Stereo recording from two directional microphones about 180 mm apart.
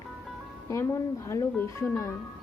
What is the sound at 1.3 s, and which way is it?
Speech, 15° left (ahead or behind).